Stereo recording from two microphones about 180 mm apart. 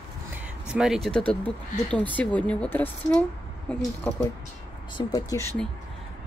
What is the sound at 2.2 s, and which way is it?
Speech, 5° left (ahead or behind).